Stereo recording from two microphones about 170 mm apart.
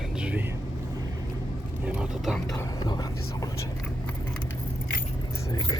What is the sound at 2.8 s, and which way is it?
Speech, 25° left (ahead or behind).